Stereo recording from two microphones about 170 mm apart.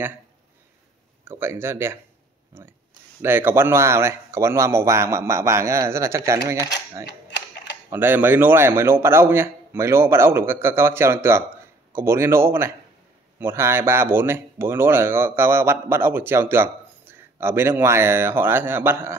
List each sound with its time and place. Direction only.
1.2 s speech: 15° right (ahead or behind)
3.2 s speech: 10° right (ahead or behind)
7.1 s typing: 90° left
7.9 s speech: 10° right (ahead or behind)